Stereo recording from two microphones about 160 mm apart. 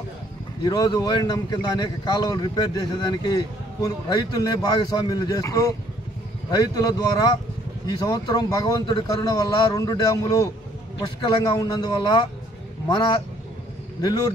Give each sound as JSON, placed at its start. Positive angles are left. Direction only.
{"t": 0.7, "sound": "a man's voice", "side_deg": 25}